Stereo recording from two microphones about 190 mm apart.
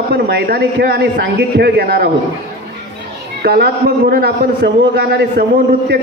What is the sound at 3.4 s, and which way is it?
Speech, 55° right (ahead or behind).